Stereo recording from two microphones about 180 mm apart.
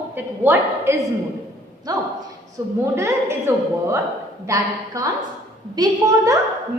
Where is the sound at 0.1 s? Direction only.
15° right (ahead or behind).